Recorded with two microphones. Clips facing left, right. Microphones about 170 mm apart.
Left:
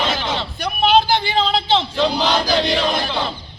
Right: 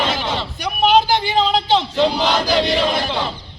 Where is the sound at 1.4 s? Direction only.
15° right (ahead or behind).